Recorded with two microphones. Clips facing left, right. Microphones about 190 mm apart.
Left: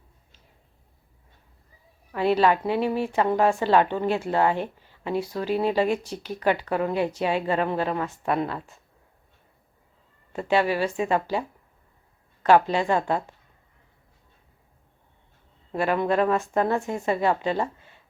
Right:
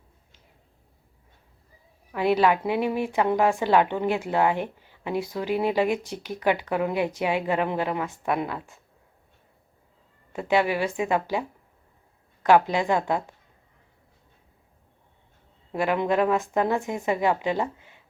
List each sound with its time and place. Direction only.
2.1 s a woman's voice: 15° right (ahead or behind)
10.3 s a woman's voice: 15° right (ahead or behind)
15.7 s a woman's voice: 15° right (ahead or behind)